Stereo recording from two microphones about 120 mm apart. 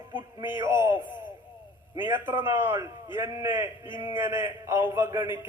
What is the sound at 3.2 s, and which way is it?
Speech, 30° right (ahead or behind).